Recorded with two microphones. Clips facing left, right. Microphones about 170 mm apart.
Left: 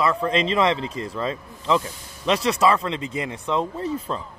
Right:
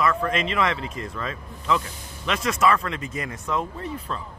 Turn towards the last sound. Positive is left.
turn(degrees=30)  # may be behind; listen again after turning